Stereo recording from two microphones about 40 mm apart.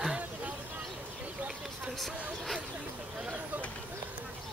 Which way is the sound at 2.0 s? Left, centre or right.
Centre.